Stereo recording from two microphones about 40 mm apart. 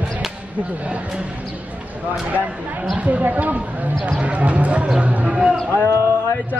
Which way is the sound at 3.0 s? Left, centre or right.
Right.